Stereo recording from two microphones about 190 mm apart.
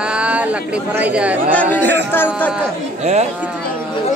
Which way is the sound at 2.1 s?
10° left (ahead or behind).